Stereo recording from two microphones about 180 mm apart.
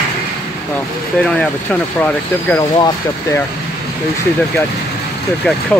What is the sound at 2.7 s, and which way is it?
Speech, 25° left (ahead or behind).